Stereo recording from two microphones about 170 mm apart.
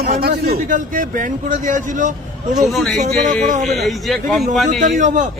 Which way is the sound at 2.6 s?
Centre (ahead or behind).